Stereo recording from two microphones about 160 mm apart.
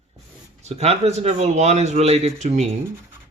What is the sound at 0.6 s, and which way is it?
Speech, 40° right (ahead or behind).